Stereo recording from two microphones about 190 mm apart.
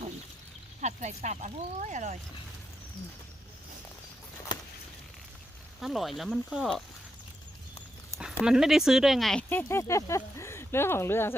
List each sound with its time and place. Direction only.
0.8 s speech: 40° right (ahead or behind)
5.8 s speech: centre (ahead or behind)
8.4 s speech: 5° right (ahead or behind); by 11.3 s 10° left (ahead or behind)